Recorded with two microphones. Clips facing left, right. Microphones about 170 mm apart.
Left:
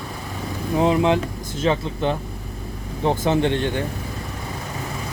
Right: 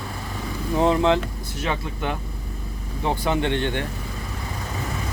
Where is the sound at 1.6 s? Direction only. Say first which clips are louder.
Left 6 dB; 25° left (ahead or behind).